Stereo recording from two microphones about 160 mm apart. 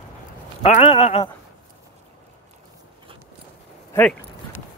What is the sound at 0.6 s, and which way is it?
Speech, 40° left (ahead or behind).